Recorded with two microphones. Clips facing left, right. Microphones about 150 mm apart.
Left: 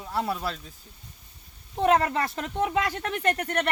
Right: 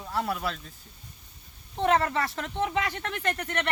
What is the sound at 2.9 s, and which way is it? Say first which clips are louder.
Speech: left 4 dB; 40° left (ahead or behind).